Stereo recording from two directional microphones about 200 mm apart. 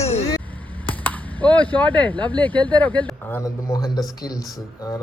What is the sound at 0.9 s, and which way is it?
Speech, 10° left (ahead or behind).